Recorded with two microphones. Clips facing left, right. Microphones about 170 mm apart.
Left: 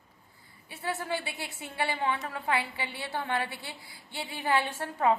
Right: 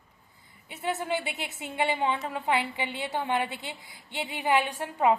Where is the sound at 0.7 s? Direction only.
20° right (ahead or behind).